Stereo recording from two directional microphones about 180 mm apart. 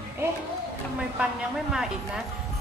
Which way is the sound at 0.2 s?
15° right (ahead or behind).